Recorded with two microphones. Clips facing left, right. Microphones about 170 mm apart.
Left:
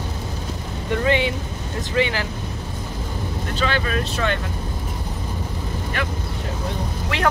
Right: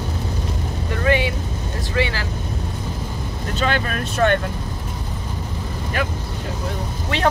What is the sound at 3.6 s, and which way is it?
Speech, 45° right (ahead or behind).